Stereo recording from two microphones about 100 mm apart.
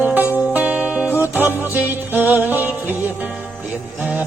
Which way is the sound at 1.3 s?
20° right (ahead or behind).